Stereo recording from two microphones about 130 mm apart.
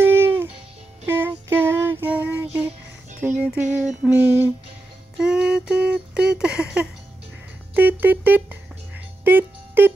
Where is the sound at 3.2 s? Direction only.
10° right (ahead or behind).